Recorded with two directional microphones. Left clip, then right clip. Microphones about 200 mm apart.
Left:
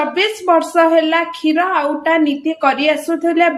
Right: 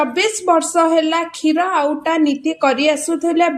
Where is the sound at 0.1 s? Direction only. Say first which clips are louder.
Left 1 dB; 40° right (ahead or behind).